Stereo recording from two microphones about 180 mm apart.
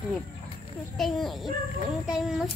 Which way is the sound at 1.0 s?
Centre (ahead or behind).